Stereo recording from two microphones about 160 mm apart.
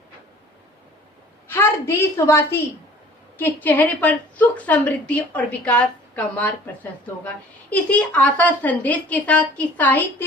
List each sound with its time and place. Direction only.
1.5 s a woman's voice: 15° left (ahead or behind)
7.7 s a woman's voice: 10° left (ahead or behind)